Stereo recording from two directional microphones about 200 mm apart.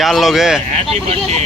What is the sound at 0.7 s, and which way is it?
Speech, 30° right (ahead or behind).